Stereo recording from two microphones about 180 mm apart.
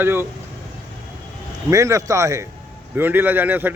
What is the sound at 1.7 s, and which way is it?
A man's voice, 15° right (ahead or behind).